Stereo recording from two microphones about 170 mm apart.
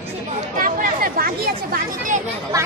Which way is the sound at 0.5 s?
55° right (ahead or behind).